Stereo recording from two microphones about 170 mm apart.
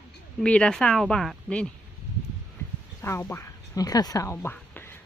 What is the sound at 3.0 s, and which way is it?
Speech, 15° left (ahead or behind).